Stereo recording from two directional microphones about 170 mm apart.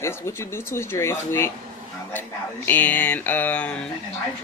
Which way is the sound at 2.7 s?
10° left (ahead or behind).